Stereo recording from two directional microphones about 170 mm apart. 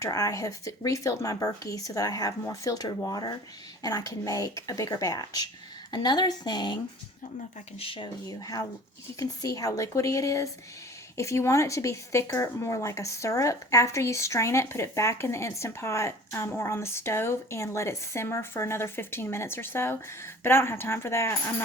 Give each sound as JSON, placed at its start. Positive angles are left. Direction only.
{"t": 0.0, "sound": "speech", "side_deg": 20}
{"t": 7.8, "sound": "speech", "side_deg": 30}